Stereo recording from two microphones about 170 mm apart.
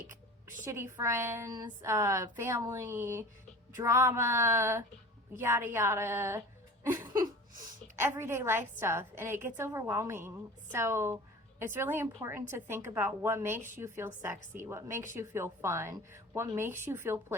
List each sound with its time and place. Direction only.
0.6 s a woman's voice: 15° right (ahead or behind)